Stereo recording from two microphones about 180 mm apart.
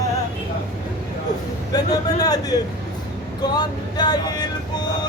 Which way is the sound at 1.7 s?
20° left (ahead or behind).